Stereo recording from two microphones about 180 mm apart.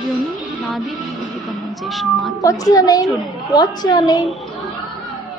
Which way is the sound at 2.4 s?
20° left (ahead or behind).